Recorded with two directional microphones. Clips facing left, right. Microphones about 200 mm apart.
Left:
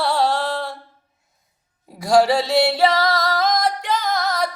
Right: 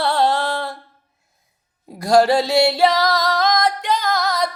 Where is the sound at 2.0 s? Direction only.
5° left (ahead or behind).